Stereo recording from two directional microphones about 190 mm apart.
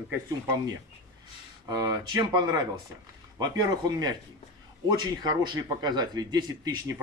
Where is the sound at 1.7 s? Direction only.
20° right (ahead or behind).